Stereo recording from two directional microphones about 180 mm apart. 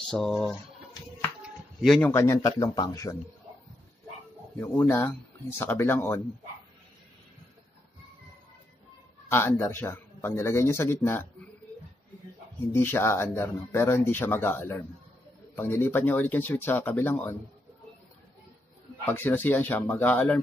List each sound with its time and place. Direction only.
0.1 s speech: 5° left (ahead or behind)
1.4 s a sound: centre (ahead or behind)
2.0 s speech: 15° left (ahead or behind)
4.6 s speech: 15° left (ahead or behind)
9.3 s speech: 15° left (ahead or behind)
12.7 s speech: 15° left (ahead or behind)
19.0 s speech: 10° left (ahead or behind)